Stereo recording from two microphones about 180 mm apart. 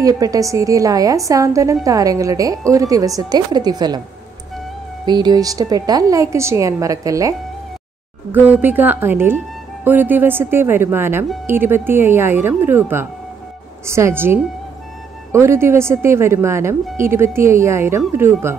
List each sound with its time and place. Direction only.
0.0 s a woman's voice: 20° right (ahead or behind)
5.0 s a woman's voice: 25° right (ahead or behind)